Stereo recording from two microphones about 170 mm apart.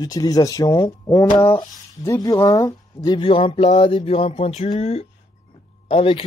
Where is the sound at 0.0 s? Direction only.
20° left (ahead or behind).